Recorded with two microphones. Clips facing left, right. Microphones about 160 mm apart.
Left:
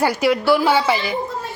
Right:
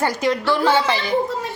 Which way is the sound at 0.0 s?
10° left (ahead or behind).